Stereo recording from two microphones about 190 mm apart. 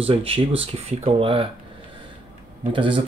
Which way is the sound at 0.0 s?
30° right (ahead or behind).